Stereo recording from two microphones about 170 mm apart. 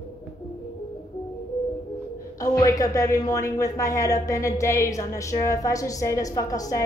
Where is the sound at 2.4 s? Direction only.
20° left (ahead or behind).